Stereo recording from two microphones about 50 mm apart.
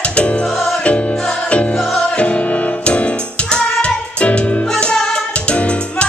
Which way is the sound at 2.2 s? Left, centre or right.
Left.